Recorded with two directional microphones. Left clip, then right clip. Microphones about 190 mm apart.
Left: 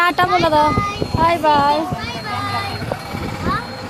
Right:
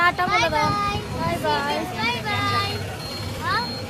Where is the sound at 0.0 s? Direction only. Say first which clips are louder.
Left 5 dB; 65° left (ahead or behind).